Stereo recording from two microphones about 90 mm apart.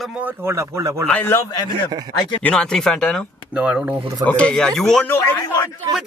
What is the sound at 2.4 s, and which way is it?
Speech, 10° left (ahead or behind).